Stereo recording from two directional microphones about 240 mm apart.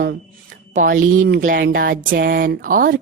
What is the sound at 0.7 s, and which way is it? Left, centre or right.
Speech, right.